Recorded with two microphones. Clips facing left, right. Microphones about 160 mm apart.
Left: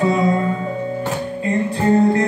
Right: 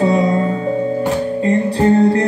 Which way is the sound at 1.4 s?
35° right (ahead or behind).